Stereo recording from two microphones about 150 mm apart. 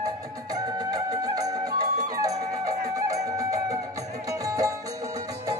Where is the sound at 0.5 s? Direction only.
25° right (ahead or behind).